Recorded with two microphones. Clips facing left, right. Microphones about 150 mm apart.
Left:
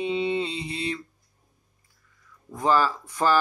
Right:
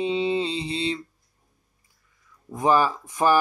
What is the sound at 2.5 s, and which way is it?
Speech, 15° right (ahead or behind).